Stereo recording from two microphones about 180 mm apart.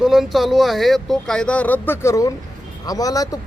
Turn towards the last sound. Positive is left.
turn(degrees=20)  # may be behind; listen again after turning